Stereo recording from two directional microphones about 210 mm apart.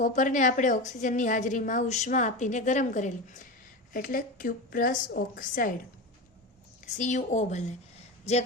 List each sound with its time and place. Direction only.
0.0 s a woman's voice: 35° left (ahead or behind)
6.8 s a woman's voice: 35° left (ahead or behind)